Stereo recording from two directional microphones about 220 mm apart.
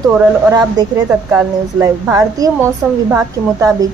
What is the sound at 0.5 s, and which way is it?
A woman's voice, 15° right (ahead or behind).